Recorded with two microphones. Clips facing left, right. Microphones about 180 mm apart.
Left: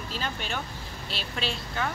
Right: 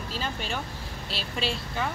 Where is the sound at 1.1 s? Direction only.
5° right (ahead or behind).